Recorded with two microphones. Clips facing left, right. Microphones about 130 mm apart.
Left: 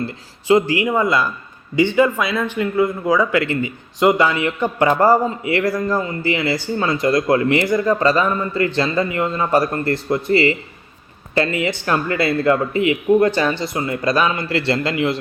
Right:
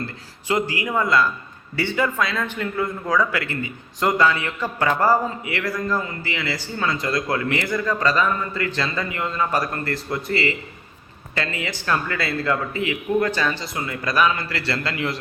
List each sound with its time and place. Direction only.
0.8 s a man's voice: 15° left (ahead or behind)